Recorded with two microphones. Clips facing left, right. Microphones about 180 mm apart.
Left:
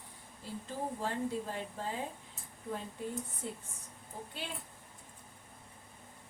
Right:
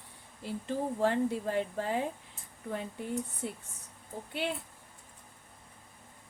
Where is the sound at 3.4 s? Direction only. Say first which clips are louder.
Right 3 dB; 65° right (ahead or behind).